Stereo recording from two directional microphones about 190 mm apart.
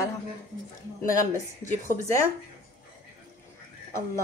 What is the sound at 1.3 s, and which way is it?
Speech, 40° left (ahead or behind).